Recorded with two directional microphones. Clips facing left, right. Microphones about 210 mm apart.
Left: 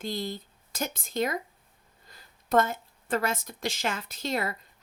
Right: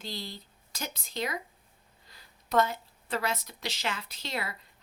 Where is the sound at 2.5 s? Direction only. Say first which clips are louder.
Left 2 dB; 50° left (ahead or behind).